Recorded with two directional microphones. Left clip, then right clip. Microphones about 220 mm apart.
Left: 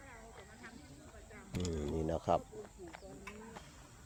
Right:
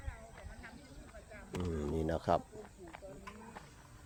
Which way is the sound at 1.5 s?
10° right (ahead or behind).